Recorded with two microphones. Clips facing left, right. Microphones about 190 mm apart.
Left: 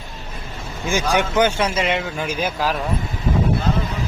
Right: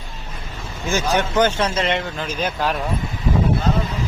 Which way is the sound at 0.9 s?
10° left (ahead or behind).